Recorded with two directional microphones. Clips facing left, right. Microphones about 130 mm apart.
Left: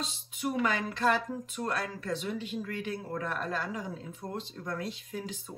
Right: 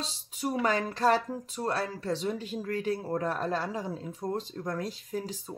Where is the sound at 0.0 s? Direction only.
35° right (ahead or behind).